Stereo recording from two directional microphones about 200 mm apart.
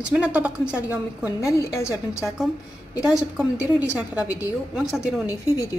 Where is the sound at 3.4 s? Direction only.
5° right (ahead or behind).